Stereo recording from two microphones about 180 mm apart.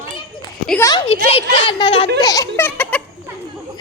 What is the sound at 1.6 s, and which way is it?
Speech, 30° left (ahead or behind).